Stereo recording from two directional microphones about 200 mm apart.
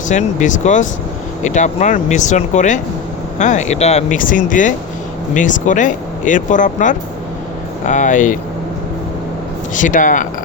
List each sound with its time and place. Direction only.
0.1 s speech: 35° left (ahead or behind)
9.7 s speech: 40° left (ahead or behind)